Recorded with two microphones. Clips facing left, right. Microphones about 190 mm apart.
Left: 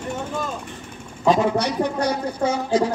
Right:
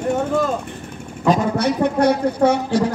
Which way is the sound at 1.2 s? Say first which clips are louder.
Right 1 dB; 50° right (ahead or behind).